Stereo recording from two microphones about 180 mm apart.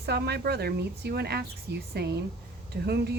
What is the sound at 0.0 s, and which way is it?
A woman's voice, 65° right (ahead or behind).